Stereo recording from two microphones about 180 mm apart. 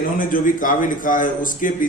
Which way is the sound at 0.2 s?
50° left (ahead or behind).